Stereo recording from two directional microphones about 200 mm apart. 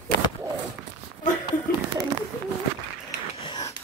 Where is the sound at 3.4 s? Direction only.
25° left (ahead or behind).